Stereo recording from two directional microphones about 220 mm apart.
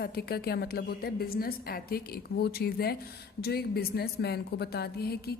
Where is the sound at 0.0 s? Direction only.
45° left (ahead or behind).